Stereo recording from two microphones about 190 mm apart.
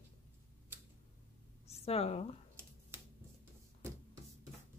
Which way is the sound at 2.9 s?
10° right (ahead or behind).